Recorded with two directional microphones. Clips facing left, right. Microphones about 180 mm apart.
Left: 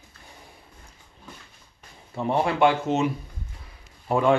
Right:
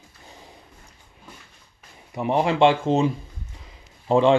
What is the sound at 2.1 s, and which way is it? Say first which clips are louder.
Speech: right 2 dB; 15° right (ahead or behind).